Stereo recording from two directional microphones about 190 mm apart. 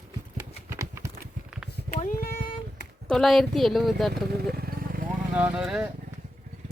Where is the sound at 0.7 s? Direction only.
15° right (ahead or behind).